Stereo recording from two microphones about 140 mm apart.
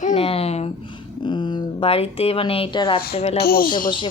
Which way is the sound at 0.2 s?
45° left (ahead or behind).